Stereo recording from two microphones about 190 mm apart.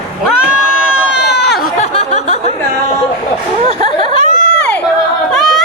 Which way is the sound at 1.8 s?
35° left (ahead or behind).